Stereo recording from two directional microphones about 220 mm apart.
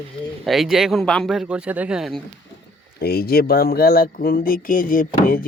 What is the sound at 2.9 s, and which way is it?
Speech, 45° left (ahead or behind).